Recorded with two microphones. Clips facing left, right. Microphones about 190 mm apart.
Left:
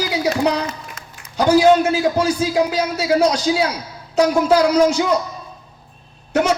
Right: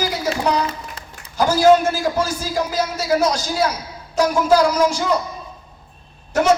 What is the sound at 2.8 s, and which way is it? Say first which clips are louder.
Speech: left 2 dB; 70° left (ahead or behind).